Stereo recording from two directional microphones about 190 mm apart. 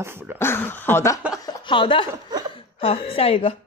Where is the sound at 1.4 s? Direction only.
25° left (ahead or behind).